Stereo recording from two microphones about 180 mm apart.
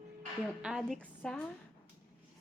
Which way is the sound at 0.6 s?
Centre (ahead or behind).